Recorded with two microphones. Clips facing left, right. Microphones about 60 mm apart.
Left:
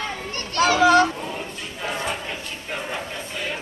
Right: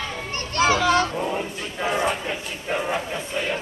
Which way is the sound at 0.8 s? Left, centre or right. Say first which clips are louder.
Left 4 dB; centre.